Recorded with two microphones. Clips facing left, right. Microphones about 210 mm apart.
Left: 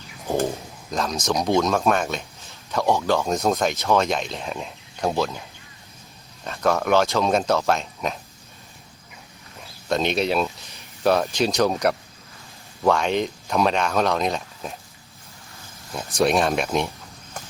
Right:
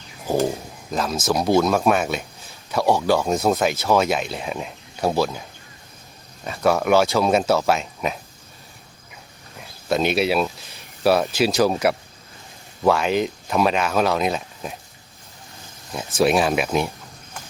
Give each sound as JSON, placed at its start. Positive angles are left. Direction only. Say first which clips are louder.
{"t": 0.9, "sound": "speech", "louder": "right 2 dB", "side_deg": -5}
{"t": 6.4, "sound": "speech", "louder": "right 2 dB", "side_deg": -10}
{"t": 9.9, "sound": "speech", "louder": "right 2 dB", "side_deg": -5}
{"t": 15.9, "sound": "speech", "louder": "right 2 dB", "side_deg": -5}